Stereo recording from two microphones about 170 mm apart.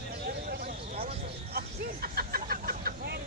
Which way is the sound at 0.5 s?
60° right (ahead or behind).